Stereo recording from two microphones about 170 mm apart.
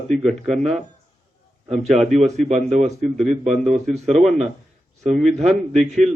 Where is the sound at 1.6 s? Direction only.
40° right (ahead or behind).